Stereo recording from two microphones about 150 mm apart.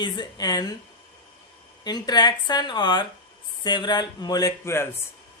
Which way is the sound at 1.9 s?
25° left (ahead or behind).